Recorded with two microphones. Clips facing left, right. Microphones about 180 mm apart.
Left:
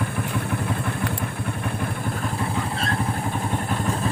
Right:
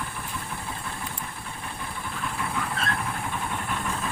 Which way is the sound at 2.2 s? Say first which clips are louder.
Left 2 dB; 35° left (ahead or behind).